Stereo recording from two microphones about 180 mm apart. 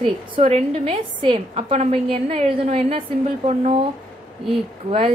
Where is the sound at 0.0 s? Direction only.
35° right (ahead or behind).